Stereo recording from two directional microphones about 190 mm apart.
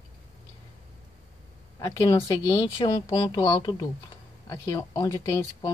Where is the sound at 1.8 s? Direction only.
20° left (ahead or behind).